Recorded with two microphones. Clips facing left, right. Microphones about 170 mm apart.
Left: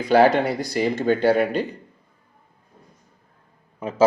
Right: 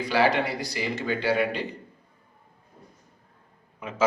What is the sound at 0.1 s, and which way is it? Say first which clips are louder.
Speech: left 8 dB; 50° left (ahead or behind).